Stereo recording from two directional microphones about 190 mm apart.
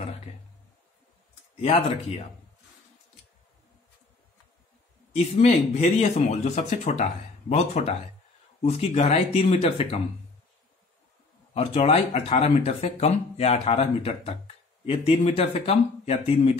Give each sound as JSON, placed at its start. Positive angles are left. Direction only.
{"t": 1.6, "sound": "speech", "side_deg": 35}
{"t": 5.1, "sound": "speech", "side_deg": 35}
{"t": 11.5, "sound": "speech", "side_deg": 30}